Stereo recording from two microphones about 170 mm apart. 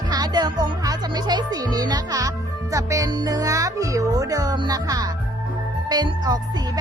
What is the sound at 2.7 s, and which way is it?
Speech, 20° right (ahead or behind).